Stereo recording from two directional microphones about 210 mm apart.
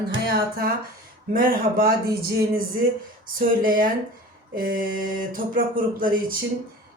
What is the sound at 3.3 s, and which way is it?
Speech, 45° right (ahead or behind).